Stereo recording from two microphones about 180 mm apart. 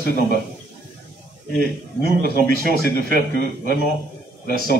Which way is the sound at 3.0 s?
55° right (ahead or behind).